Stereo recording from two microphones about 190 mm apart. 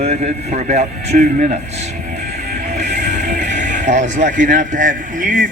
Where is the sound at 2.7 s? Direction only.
40° right (ahead or behind).